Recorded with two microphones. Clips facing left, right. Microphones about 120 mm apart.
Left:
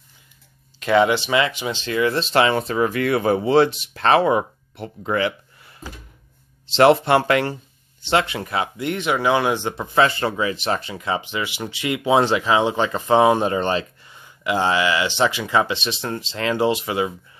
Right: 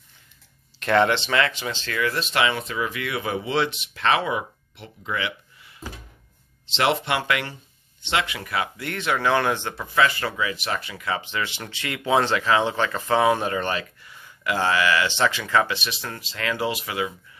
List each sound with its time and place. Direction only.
0.7 s speech: 5° left (ahead or behind)
9.9 s speech: 30° left (ahead or behind)